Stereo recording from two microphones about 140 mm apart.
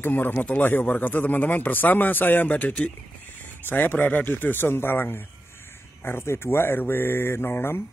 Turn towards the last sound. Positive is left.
turn(degrees=15)  # may be behind; listen again after turning